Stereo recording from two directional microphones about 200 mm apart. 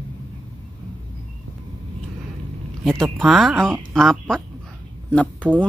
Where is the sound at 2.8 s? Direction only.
Centre (ahead or behind).